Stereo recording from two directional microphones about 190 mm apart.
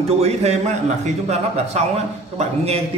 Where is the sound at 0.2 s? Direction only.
35° right (ahead or behind).